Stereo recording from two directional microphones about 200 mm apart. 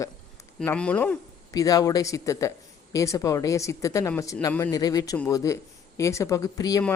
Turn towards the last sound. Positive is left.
turn(degrees=20)  # may be behind; listen again after turning